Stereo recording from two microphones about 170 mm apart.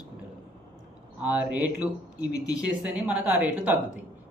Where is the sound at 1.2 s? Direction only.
10° right (ahead or behind).